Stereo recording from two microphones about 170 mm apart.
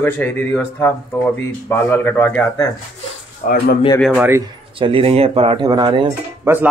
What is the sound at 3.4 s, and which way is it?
Speech, 65° left (ahead or behind).